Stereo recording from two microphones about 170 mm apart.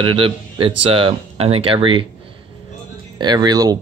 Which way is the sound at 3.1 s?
25° right (ahead or behind).